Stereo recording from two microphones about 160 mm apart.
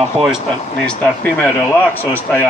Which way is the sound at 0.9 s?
10° left (ahead or behind).